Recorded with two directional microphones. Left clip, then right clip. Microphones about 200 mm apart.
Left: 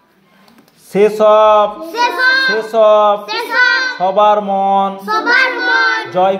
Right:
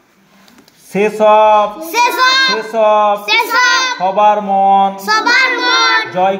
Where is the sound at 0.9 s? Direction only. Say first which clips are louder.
Even; 15° left (ahead or behind).